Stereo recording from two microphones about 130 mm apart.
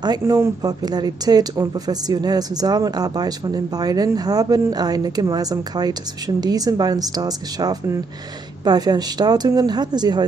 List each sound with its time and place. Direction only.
0.2 s speech: 25° right (ahead or behind)